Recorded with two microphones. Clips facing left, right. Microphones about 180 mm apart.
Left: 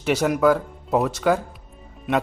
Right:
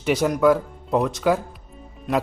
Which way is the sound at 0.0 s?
Centre (ahead or behind).